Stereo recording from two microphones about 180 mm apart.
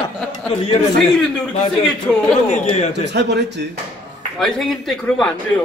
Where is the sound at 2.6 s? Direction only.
35° left (ahead or behind).